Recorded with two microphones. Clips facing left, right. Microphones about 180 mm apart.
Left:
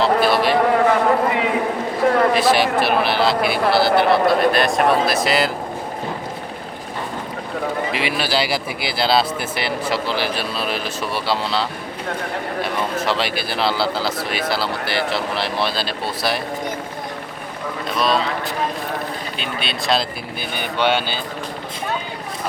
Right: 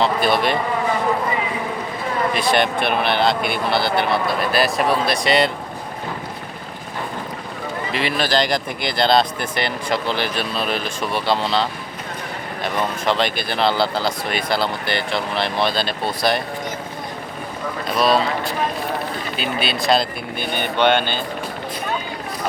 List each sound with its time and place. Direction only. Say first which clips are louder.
0.2 s speech: left 2 dB; 5° left (ahead or behind)
0.5 s a sound: left 6 dB; 70° left (ahead or behind)
2.3 s speech: left 3 dB; 5° left (ahead or behind)
7.9 s speech: right 5 dB; 10° left (ahead or behind)
17.9 s speech: right 2 dB; 5° right (ahead or behind)
19.4 s speech: right 6 dB; 5° right (ahead or behind)